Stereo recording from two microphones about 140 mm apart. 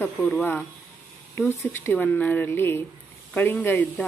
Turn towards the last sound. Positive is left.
turn(degrees=15)  # may be behind; listen again after turning